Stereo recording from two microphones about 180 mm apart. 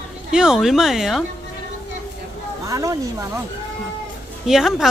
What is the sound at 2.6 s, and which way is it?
Speech, 20° right (ahead or behind).